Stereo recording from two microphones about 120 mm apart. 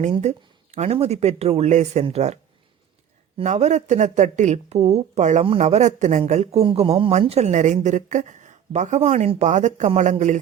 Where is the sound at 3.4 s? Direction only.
75° right (ahead or behind).